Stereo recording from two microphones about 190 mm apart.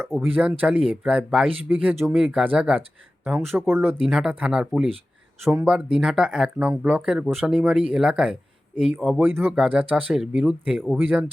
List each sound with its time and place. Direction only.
0.4 s speech: 5° right (ahead or behind)